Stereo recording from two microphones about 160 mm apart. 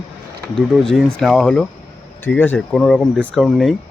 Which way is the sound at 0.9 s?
Centre (ahead or behind).